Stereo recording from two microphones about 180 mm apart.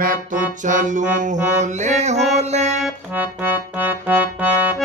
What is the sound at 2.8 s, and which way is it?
Music, 10° right (ahead or behind).